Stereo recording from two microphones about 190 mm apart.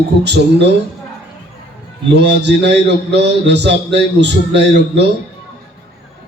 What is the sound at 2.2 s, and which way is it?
A man's voice, 65° right (ahead or behind).